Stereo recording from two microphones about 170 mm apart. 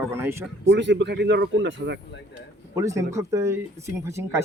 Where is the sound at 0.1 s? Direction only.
15° right (ahead or behind).